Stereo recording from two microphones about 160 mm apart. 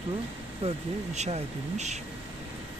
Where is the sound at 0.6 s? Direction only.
40° right (ahead or behind).